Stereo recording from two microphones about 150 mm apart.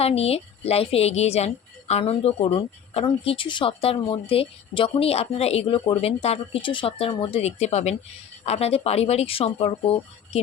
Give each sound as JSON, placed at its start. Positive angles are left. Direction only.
{"t": 0.0, "sound": "a woman's voice", "side_deg": 45}